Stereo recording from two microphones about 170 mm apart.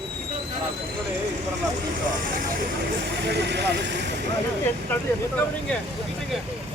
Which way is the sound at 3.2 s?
85° right.